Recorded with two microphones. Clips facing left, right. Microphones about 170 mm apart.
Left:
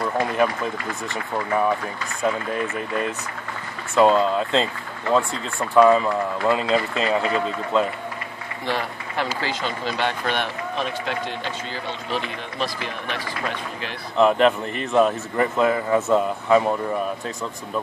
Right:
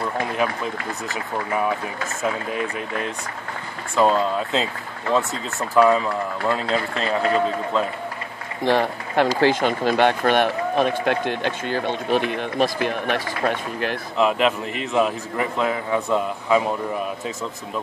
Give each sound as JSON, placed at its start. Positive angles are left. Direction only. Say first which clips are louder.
{"t": 3.9, "sound": "speech", "louder": "left 2 dB", "side_deg": 0}
{"t": 8.6, "sound": "speech", "louder": "right 7 dB", "side_deg": -50}
{"t": 14.1, "sound": "speech", "louder": "left 4 dB", "side_deg": 0}